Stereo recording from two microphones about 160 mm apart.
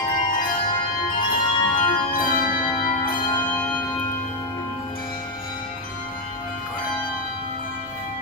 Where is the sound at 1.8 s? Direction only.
60° left (ahead or behind).